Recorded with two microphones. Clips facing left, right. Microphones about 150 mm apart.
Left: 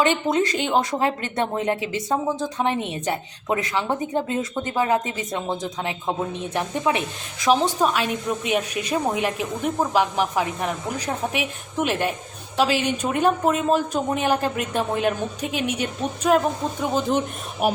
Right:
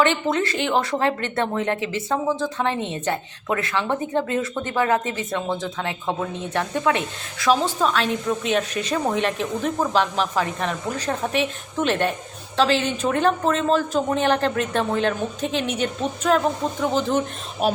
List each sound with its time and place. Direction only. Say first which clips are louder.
0.0 s a woman's voice: even; 15° left (ahead or behind)